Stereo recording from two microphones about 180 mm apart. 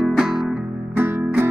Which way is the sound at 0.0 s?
Centre (ahead or behind).